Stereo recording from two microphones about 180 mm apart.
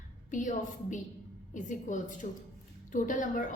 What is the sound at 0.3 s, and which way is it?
A woman's voice, 45° left (ahead or behind).